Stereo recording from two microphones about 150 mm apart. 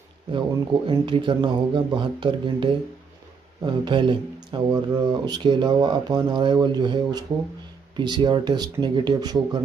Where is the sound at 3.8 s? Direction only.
30° right (ahead or behind).